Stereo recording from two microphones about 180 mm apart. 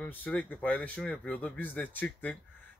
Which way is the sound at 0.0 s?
10° left (ahead or behind).